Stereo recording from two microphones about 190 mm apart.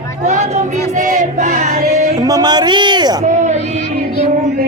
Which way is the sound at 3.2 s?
40° right (ahead or behind).